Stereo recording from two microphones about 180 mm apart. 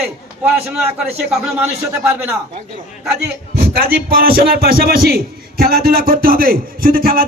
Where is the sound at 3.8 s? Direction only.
55° right (ahead or behind).